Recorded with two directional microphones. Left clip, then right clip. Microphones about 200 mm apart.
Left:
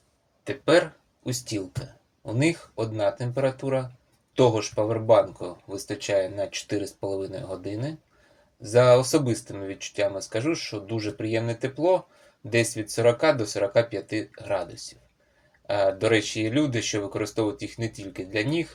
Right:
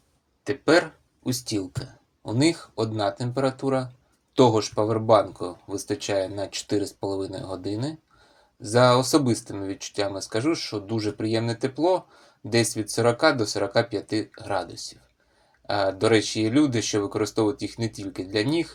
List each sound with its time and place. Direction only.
0.4 s speech: 20° right (ahead or behind)